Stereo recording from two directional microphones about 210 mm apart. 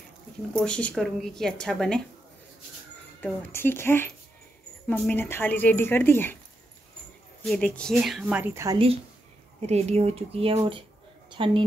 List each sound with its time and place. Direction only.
0.5 s speech: 5° left (ahead or behind)
3.2 s speech: 10° left (ahead or behind)
7.4 s speech: 5° left (ahead or behind); by 8.7 s 10° right (ahead or behind)
9.7 s a woman's voice: 30° right (ahead or behind)